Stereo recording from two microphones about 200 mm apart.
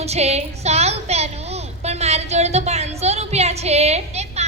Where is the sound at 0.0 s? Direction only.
30° right (ahead or behind).